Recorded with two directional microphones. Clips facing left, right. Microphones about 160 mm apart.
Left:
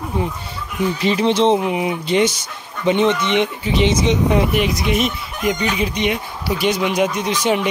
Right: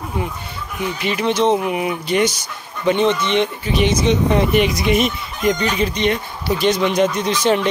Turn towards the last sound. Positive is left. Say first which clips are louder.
# right 1 dB
turn(degrees=10)  # may be behind; listen again after turning